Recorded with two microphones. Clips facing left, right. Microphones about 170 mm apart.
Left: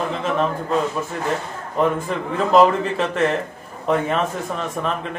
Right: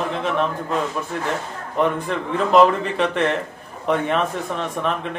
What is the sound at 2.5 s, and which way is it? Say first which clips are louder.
Speech: even; centre (ahead or behind).